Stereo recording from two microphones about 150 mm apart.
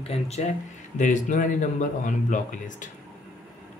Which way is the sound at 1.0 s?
55° left (ahead or behind).